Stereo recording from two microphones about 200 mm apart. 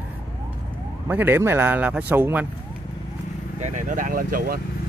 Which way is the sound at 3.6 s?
40° right (ahead or behind).